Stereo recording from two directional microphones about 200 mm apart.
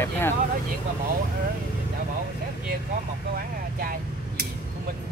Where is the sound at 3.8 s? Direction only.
50° right (ahead or behind).